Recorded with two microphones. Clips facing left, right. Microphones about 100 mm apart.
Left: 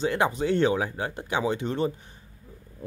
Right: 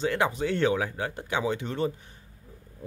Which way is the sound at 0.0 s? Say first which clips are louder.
Left 2 dB; 25° left (ahead or behind).